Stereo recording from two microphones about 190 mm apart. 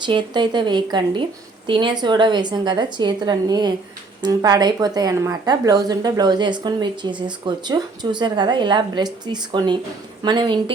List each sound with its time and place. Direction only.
0.0 s a woman's voice: 25° right (ahead or behind)